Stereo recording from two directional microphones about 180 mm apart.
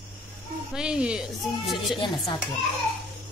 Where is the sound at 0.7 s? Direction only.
5° right (ahead or behind).